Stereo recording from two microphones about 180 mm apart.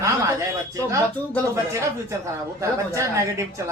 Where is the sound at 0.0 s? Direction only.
15° right (ahead or behind).